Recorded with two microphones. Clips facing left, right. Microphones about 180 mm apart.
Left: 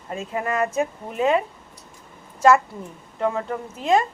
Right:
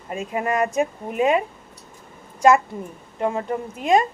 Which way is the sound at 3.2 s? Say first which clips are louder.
Right 1 dB; 20° right (ahead or behind).